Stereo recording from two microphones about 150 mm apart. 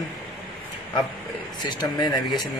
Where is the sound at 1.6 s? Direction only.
30° left (ahead or behind).